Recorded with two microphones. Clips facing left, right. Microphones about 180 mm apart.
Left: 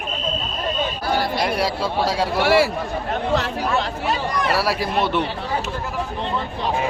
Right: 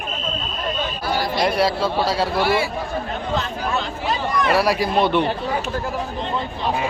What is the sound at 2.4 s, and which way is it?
Speech, 80° left.